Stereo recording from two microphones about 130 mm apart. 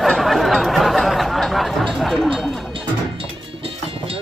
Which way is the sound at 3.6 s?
45° right (ahead or behind).